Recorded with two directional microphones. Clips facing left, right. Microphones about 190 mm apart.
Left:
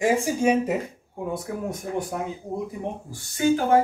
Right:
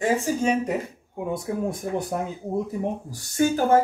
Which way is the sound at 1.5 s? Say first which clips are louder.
Right 4 dB; 25° right (ahead or behind).